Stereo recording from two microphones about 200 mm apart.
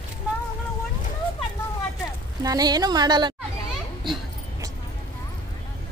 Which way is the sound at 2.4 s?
20° right (ahead or behind).